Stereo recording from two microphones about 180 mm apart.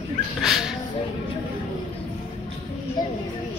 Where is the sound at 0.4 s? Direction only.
Centre (ahead or behind).